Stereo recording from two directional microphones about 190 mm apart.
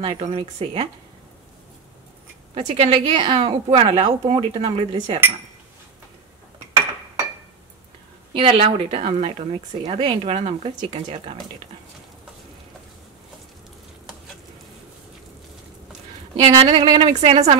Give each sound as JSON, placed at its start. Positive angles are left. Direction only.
{"t": 0.0, "sound": "speech", "side_deg": -35}
{"t": 2.5, "sound": "speech", "side_deg": -30}
{"t": 8.3, "sound": "speech", "side_deg": -30}
{"t": 16.3, "sound": "speech", "side_deg": -30}
{"t": 17.1, "sound": "speech", "side_deg": -35}